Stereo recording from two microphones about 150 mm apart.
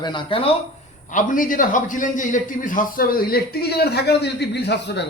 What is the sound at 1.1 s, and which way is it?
A man's voice, 60° left (ahead or behind).